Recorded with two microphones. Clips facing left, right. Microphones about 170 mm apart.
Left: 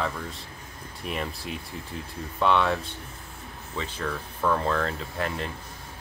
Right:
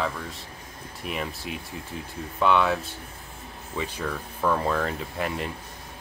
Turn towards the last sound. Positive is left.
turn(degrees=-10)  # may be behind; listen again after turning